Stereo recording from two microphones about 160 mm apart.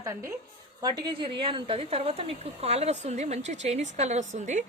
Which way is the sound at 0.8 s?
25° right (ahead or behind).